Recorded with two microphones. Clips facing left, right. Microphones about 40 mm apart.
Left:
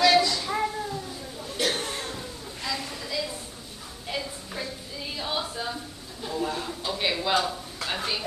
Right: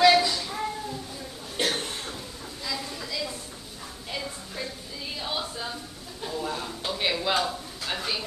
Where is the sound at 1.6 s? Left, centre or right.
Right.